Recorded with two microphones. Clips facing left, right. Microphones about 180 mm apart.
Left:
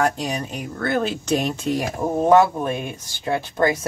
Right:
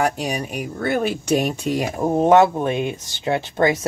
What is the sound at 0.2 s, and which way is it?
Speech, 10° right (ahead or behind).